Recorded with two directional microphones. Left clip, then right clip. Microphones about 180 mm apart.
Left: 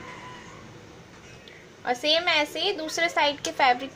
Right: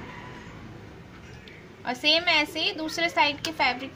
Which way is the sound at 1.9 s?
35° left (ahead or behind).